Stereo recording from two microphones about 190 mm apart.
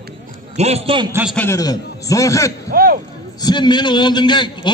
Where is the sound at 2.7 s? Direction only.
50° right (ahead or behind).